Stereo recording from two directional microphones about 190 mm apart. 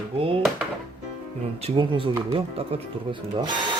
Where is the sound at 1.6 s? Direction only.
30° right (ahead or behind).